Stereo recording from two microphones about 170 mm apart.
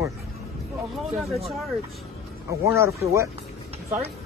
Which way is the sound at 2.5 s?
15° right (ahead or behind).